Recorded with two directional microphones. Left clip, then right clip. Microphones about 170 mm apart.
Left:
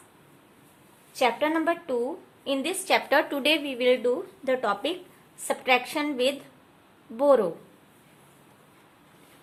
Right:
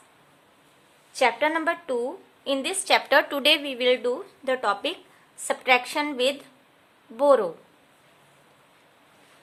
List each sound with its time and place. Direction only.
1.1 s a woman's voice: 40° right (ahead or behind)